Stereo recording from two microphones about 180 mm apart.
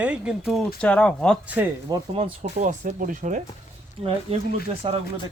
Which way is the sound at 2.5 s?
45° right (ahead or behind).